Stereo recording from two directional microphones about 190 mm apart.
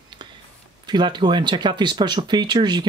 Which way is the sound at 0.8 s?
25° right (ahead or behind).